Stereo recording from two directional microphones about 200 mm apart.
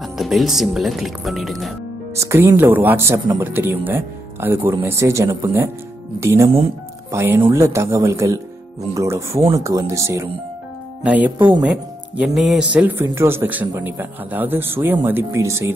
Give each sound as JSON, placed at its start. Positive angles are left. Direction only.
{"t": 0.2, "sound": "speech", "side_deg": 0}
{"t": 2.1, "sound": "speech", "side_deg": -15}